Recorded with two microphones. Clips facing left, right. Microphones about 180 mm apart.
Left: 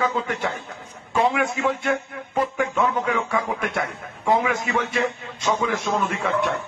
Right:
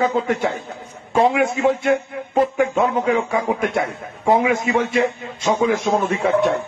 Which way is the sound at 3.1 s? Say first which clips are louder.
Right 5 dB; 45° right (ahead or behind).